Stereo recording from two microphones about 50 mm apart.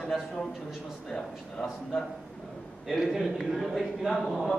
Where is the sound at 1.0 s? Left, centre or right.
Centre.